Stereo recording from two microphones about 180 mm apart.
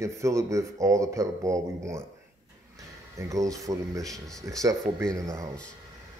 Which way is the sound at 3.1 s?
20° right (ahead or behind).